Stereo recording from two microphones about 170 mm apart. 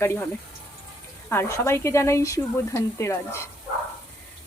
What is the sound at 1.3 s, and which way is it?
Speech, 15° left (ahead or behind).